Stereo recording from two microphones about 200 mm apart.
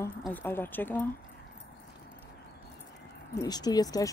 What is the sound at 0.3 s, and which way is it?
Speech, 10° left (ahead or behind).